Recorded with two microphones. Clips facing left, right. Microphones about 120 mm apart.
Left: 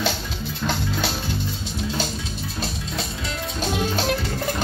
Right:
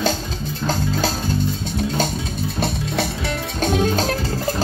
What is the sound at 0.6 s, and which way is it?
Music, 40° right (ahead or behind).